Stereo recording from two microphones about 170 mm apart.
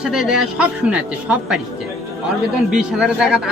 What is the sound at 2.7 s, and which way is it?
Speech, 5° right (ahead or behind).